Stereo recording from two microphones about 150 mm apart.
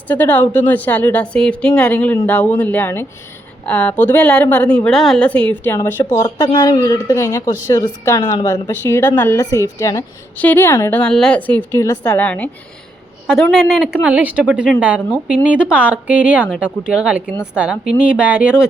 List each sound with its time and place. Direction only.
0.1 s a woman's voice: 10° left (ahead or behind)
6.2 s a woman's voice: 30° left (ahead or behind); by 12.5 s 10° left (ahead or behind)
13.2 s a woman's voice: 5° right (ahead or behind)